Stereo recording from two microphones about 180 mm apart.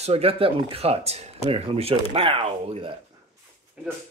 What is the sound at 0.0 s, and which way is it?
Speech, 35° right (ahead or behind).